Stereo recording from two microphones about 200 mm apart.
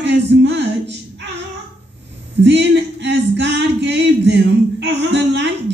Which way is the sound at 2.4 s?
60° right (ahead or behind).